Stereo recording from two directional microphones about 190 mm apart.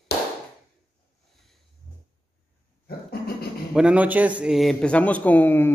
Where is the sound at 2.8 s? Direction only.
55° left (ahead or behind).